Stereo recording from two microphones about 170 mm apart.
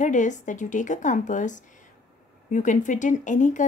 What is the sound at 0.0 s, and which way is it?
A woman's voice, 45° left (ahead or behind).